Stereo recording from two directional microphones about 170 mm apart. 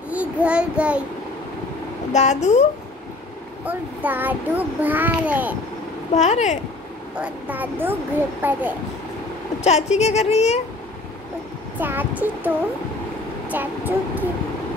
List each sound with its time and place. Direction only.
0.1 s child singing: 10° right (ahead or behind)
2.1 s a child's voice: 40° left (ahead or behind)
3.6 s a child's voice: 10° right (ahead or behind)
6.1 s a child's voice: 40° left (ahead or behind)
7.2 s a child's voice: 10° right (ahead or behind)
9.6 s a woman's voice: 40° left (ahead or behind)
11.8 s a child's voice: 10° right (ahead or behind)